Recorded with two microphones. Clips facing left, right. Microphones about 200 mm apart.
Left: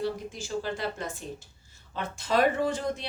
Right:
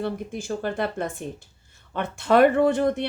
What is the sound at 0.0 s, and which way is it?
A woman's voice, 55° right (ahead or behind).